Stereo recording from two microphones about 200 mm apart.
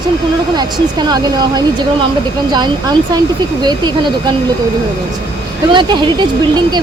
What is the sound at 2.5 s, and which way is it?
Speech, 20° right (ahead or behind).